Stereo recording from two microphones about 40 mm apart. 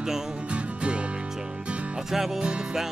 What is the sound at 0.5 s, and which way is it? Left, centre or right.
Music, right.